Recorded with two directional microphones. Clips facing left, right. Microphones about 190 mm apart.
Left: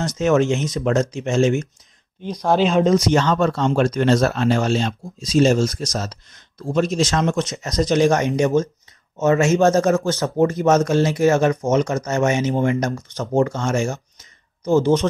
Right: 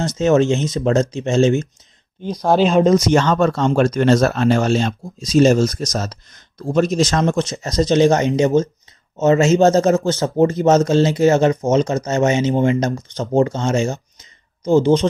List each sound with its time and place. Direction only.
0.0 s speech: 25° right (ahead or behind)